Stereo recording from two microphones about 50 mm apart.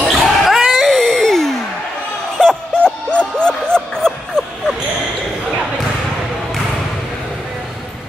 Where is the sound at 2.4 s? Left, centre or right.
Centre.